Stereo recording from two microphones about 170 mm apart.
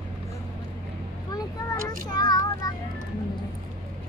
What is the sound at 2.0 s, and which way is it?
Child singing, 25° left (ahead or behind).